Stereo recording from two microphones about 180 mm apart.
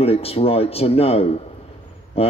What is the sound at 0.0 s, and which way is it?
A man's voice, 35° left (ahead or behind).